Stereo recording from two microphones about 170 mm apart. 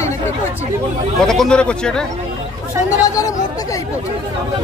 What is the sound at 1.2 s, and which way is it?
Speech, 5° left (ahead or behind).